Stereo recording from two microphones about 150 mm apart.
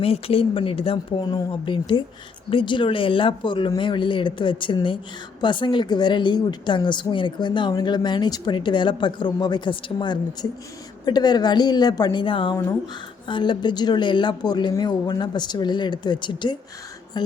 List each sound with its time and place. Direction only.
0.0 s a woman's voice: 40° left (ahead or behind)
12.5 s speech: 20° left (ahead or behind)
13.2 s a woman's voice: 30° left (ahead or behind)